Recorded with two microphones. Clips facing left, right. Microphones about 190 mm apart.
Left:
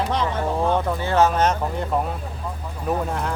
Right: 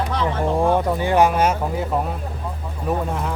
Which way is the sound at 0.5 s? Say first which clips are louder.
Right 4 dB; 15° right (ahead or behind).